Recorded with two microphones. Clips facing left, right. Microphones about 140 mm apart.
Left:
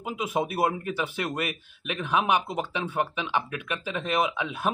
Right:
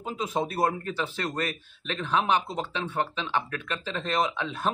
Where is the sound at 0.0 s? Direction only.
10° left (ahead or behind).